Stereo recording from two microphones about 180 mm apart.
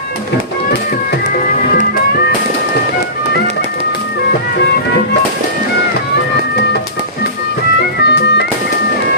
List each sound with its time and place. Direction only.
7.9 s music: 65° left (ahead or behind)